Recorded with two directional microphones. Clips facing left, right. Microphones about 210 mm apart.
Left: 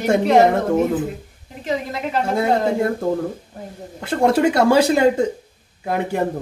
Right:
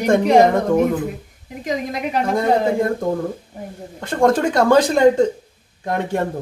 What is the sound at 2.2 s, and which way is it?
Speech, 10° left (ahead or behind).